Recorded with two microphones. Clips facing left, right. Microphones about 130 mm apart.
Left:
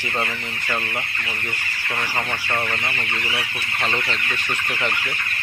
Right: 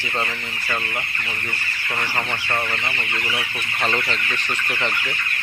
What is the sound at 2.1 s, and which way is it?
Speech, 5° left (ahead or behind).